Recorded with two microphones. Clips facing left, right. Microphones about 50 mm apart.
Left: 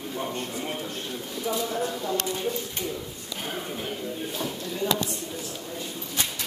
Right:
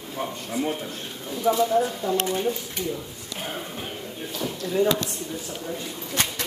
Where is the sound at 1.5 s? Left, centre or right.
Right.